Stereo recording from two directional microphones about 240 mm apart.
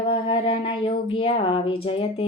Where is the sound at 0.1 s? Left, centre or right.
Left.